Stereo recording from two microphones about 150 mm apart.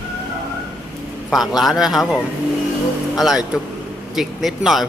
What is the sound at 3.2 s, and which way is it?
A man's voice, centre (ahead or behind).